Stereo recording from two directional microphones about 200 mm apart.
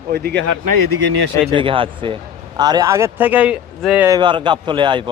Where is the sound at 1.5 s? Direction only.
25° right (ahead or behind); by 4.1 s 5° right (ahead or behind).